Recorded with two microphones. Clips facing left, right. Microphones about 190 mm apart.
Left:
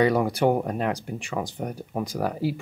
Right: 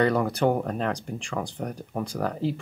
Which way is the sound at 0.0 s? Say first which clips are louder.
Left 2 dB; 10° left (ahead or behind).